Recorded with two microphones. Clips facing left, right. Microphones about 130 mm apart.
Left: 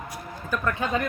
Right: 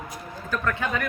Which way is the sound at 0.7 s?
25° left (ahead or behind).